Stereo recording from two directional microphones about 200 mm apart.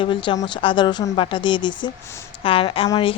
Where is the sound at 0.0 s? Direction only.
25° left (ahead or behind).